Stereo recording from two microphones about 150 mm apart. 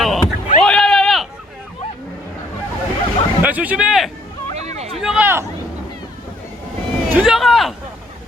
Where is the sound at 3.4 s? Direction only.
10° right (ahead or behind).